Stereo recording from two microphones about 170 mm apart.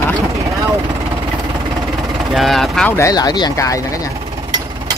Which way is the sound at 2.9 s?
20° left (ahead or behind).